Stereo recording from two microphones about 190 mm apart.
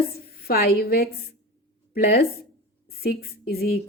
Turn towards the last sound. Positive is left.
turn(degrees=55)  # may be behind; listen again after turning